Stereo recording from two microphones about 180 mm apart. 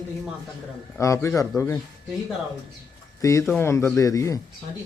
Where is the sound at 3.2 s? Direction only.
20° left (ahead or behind).